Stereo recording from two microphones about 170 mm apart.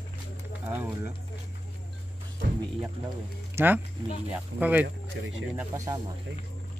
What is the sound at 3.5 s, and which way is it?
Speech, 10° right (ahead or behind).